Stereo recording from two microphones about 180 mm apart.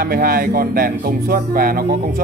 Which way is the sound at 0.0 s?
55° right (ahead or behind).